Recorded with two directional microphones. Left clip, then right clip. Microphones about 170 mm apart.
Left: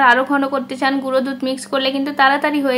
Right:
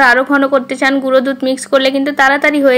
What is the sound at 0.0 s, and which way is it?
Speech, 30° right (ahead or behind).